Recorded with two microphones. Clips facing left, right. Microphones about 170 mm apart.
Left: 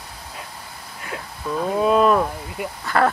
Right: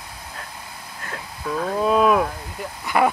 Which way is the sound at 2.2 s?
10° left (ahead or behind).